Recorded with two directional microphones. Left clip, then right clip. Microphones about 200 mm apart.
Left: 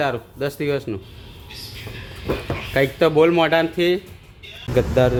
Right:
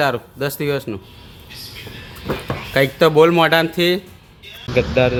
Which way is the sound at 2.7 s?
5° right (ahead or behind).